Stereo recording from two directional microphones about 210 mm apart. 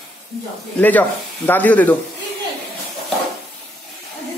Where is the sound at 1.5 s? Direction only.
10° left (ahead or behind).